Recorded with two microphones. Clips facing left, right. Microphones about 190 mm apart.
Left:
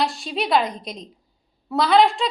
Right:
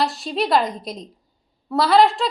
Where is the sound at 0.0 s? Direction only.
Centre (ahead or behind).